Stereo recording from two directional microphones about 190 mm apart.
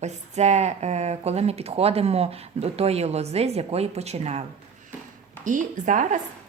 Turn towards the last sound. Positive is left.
turn(degrees=-40)  # may be behind; listen again after turning